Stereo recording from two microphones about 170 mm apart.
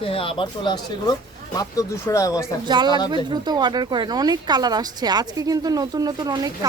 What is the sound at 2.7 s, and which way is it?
Speech, 25° right (ahead or behind).